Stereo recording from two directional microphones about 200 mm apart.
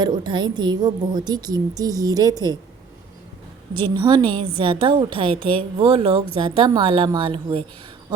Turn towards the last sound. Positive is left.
turn(degrees=-25)  # may be behind; listen again after turning